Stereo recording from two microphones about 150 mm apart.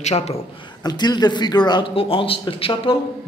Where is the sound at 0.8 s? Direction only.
30° left (ahead or behind).